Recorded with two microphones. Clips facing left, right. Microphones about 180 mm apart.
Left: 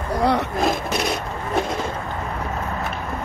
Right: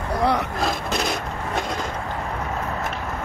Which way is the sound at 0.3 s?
20° left (ahead or behind).